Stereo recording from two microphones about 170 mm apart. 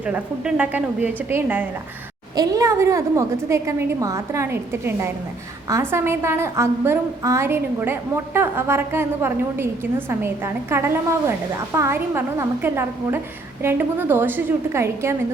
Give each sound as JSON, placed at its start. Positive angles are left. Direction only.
{"t": 0.0, "sound": "a woman's voice", "side_deg": -5}